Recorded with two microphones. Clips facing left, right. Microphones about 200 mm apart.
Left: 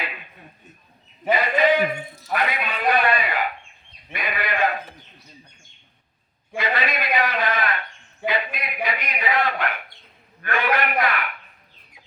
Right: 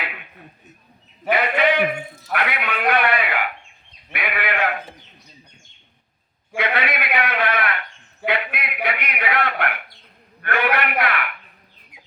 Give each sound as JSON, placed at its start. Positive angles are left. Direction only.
{"t": 1.3, "sound": "a man's voice", "side_deg": -65}
{"t": 4.1, "sound": "sheep", "side_deg": -65}
{"t": 6.6, "sound": "a sound", "side_deg": -65}